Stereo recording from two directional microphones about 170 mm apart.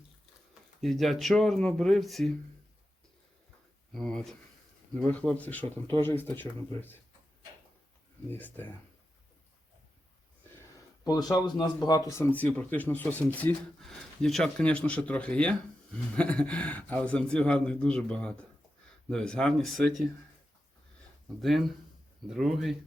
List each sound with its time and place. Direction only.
0.8 s speech: centre (ahead or behind)
3.9 s speech: 5° left (ahead or behind)
8.3 s speech: 10° left (ahead or behind)
11.0 s speech: 25° left (ahead or behind); by 20.1 s centre (ahead or behind)
21.4 s speech: centre (ahead or behind)